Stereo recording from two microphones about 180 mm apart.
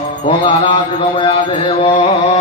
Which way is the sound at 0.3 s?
30° left (ahead or behind).